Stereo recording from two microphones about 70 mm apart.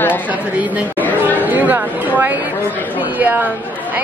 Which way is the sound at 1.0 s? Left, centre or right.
Left.